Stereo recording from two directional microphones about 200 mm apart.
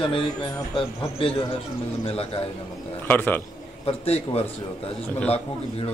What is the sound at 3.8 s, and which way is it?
Speech, 30° left (ahead or behind).